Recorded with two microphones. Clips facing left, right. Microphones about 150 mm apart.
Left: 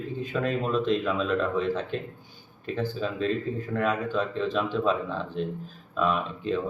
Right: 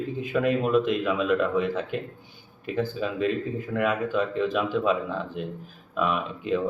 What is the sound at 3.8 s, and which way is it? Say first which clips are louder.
A man's voice: right 2 dB; 10° right (ahead or behind).